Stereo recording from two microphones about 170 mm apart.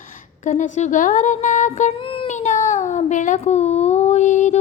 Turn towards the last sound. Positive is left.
turn(degrees=45)  # may be behind; listen again after turning